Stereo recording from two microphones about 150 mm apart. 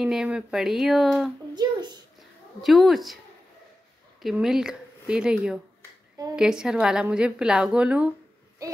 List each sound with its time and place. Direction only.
0.0 s a woman's voice: 5° right (ahead or behind)
1.5 s speech: 30° right (ahead or behind)
2.6 s a woman's voice: centre (ahead or behind)
4.2 s a woman's voice: centre (ahead or behind)